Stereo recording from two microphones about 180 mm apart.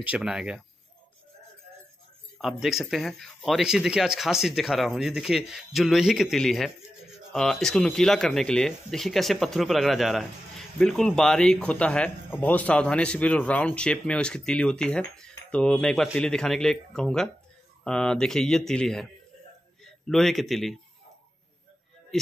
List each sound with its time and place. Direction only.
0.0 s speech: 5° right (ahead or behind)
2.3 s a man's voice: centre (ahead or behind)